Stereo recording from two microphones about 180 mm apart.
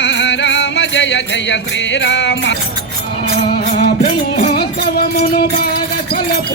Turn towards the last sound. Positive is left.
turn(degrees=60)  # may be behind; listen again after turning